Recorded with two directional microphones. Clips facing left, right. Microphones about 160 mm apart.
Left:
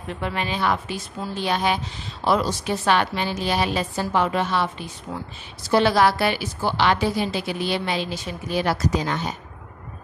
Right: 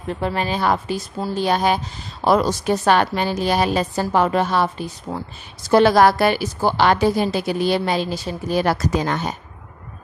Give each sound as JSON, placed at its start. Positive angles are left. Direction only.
{"t": 0.1, "sound": "a woman's voice", "side_deg": -35}